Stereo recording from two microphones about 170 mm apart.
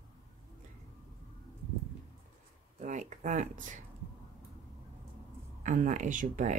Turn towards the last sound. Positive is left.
turn(degrees=-50)  # may be behind; listen again after turning